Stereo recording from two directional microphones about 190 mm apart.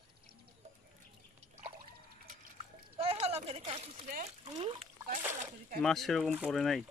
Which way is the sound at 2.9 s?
30° right (ahead or behind).